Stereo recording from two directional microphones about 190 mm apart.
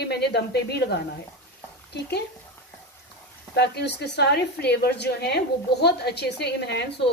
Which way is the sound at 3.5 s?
60° left (ahead or behind).